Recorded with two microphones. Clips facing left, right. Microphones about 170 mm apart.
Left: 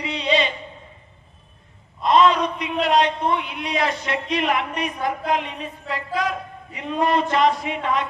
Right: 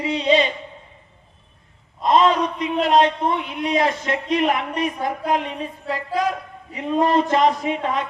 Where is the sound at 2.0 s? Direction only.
40° right (ahead or behind).